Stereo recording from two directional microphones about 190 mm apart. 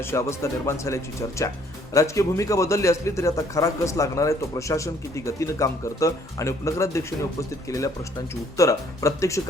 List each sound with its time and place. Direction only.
0.0 s a man's voice: 15° left (ahead or behind)